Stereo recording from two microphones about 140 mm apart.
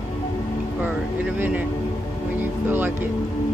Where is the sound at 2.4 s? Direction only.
15° right (ahead or behind).